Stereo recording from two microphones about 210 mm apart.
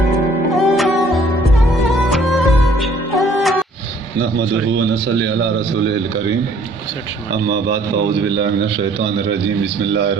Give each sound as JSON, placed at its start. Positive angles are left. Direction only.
{"t": 0.5, "sound": "saxophone", "side_deg": 0}
{"t": 1.1, "sound": "music", "side_deg": 0}
{"t": 4.2, "sound": "a man's voice", "side_deg": -55}
{"t": 7.4, "sound": "a man's voice", "side_deg": -50}